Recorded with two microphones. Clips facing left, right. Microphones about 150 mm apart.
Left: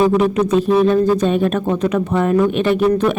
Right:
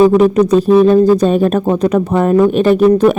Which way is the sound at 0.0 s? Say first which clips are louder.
Right 6 dB; 40° right (ahead or behind).